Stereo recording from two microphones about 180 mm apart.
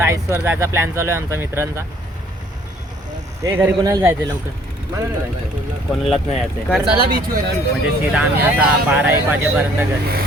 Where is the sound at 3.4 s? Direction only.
15° right (ahead or behind).